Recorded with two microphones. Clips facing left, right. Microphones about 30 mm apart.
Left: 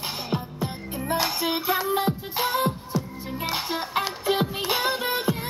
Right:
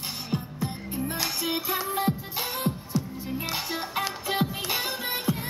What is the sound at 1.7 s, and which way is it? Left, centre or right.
Music, centre.